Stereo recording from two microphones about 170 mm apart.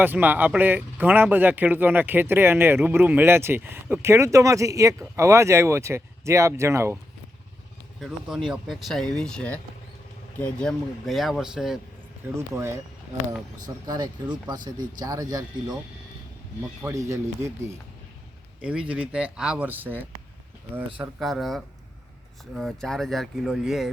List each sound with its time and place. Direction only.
0.0 s speech: 10° right (ahead or behind)
7.9 s speech: centre (ahead or behind)
12.4 s speech: 15° right (ahead or behind)
16.8 s speech: 15° right (ahead or behind)
21.0 s speech: centre (ahead or behind)